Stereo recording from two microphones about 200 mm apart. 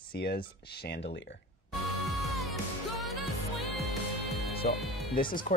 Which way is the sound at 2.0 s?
Centre (ahead or behind).